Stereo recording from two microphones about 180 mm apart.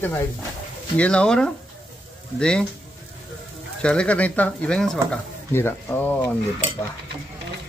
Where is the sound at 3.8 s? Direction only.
5° left (ahead or behind).